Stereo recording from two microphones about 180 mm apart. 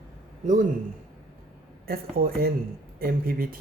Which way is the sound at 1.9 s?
55° right (ahead or behind).